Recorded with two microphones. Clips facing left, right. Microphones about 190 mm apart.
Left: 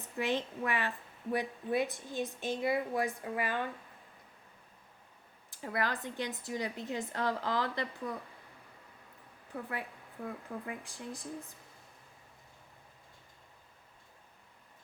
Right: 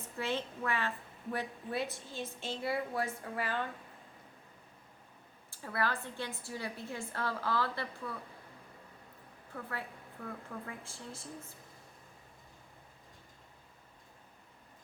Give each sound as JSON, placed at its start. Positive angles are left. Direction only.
{"t": 0.0, "sound": "a woman's voice", "side_deg": 15}
{"t": 5.5, "sound": "a woman's voice", "side_deg": 15}
{"t": 9.5, "sound": "a woman's voice", "side_deg": 15}
{"t": 10.2, "sound": "speech", "side_deg": 30}
{"t": 10.7, "sound": "a woman's voice", "side_deg": 15}